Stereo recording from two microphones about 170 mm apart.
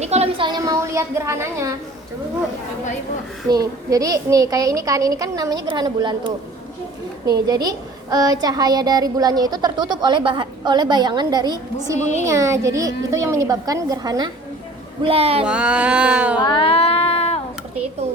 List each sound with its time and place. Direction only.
0.0 s a woman's voice: 40° right (ahead or behind); by 1.7 s 15° right (ahead or behind)
3.5 s speech: 20° right (ahead or behind)
15.0 s speech: 35° right (ahead or behind)
15.4 s a woman's voice: 5° right (ahead or behind)
16.4 s a sound: 35° left (ahead or behind)